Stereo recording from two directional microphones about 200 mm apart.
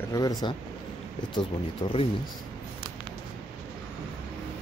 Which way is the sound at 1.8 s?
25° left (ahead or behind).